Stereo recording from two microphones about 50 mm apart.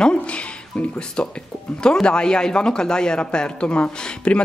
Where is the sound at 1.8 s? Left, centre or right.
Centre.